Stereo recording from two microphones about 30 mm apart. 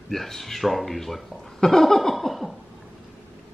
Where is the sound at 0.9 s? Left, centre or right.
Centre.